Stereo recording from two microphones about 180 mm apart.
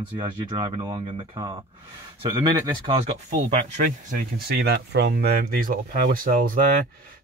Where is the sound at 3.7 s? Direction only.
45° right (ahead or behind).